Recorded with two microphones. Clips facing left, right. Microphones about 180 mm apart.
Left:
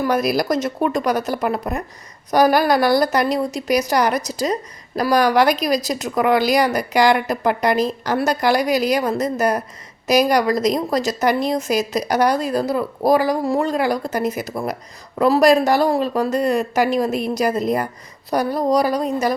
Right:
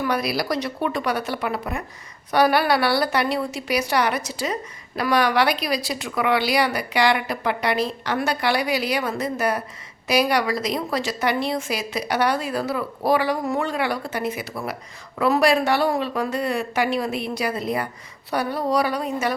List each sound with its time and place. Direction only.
0.0 s speech: 45° left (ahead or behind)